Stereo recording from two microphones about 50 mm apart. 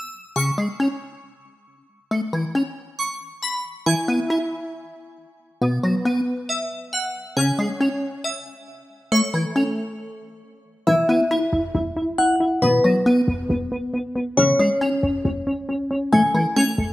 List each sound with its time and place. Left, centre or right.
0.3 s music: centre
2.0 s music: centre
5.6 s music: centre
7.9 s music: centre
9.1 s music: centre
10.9 s music: centre